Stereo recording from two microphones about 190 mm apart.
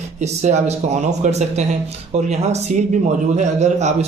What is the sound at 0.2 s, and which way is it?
A man's voice, 35° right (ahead or behind).